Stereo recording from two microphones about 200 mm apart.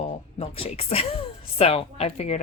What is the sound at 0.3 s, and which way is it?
A woman's voice, 30° left (ahead or behind).